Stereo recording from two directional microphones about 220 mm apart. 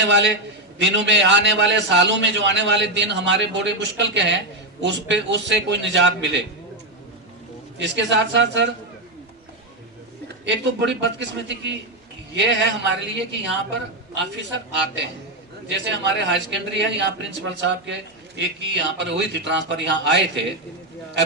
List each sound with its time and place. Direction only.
0.0 s a man's voice: 55° right (ahead or behind)
7.8 s a man's voice: 55° right (ahead or behind)
10.4 s a man's voice: 50° right (ahead or behind)
14.7 s a man's voice: 55° right (ahead or behind)